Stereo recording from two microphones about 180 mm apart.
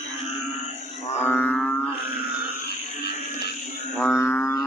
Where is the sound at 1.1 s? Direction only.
10° left (ahead or behind).